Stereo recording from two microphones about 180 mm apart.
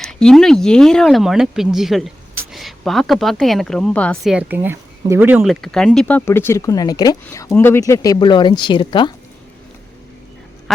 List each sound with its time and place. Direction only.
0.0 s a woman's voice: 5° left (ahead or behind); by 9.1 s 25° left (ahead or behind)